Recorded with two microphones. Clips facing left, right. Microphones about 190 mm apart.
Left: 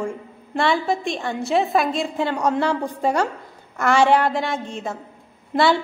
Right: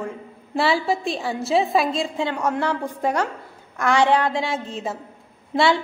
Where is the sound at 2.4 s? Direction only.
15° left (ahead or behind).